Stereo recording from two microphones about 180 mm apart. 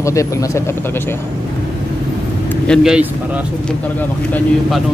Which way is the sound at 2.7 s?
5° right (ahead or behind).